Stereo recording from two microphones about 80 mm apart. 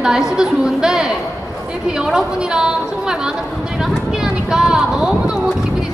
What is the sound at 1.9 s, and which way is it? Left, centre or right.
A woman's voice, centre.